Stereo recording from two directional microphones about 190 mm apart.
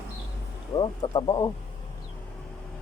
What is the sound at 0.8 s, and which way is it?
Speech, 25° left (ahead or behind).